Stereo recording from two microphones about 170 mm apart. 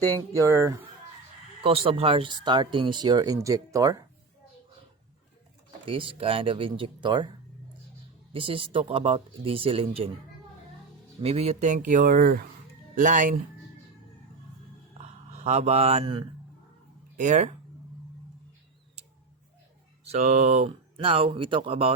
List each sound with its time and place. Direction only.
0.3 s speech: 15° right (ahead or behind)
1.6 s speech: 30° right (ahead or behind)
5.8 s speech: 30° right (ahead or behind)
11.2 s speech: 35° right (ahead or behind)
11.9 s speech: 55° right (ahead or behind)
13.0 s speech: 50° right (ahead or behind)
15.3 s speech: 40° right (ahead or behind)
20.1 s speech: 40° right (ahead or behind)